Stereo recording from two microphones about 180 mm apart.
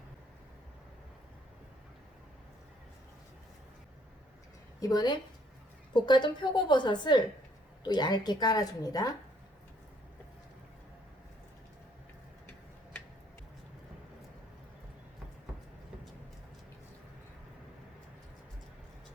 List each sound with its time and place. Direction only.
4.8 s a woman's voice: 20° left (ahead or behind)